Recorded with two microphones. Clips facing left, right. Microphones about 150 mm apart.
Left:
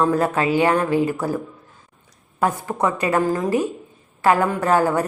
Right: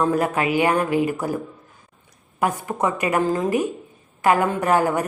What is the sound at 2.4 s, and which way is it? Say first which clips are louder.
A woman's voice: left 1 dB; 15° right (ahead or behind).